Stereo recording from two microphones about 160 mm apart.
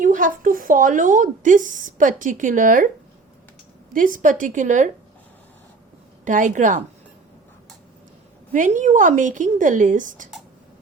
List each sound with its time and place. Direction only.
0.0 s a woman's voice: 55° right (ahead or behind)
3.9 s speech: 55° right (ahead or behind)
6.2 s speech: 50° right (ahead or behind)
8.5 s speech: 50° right (ahead or behind)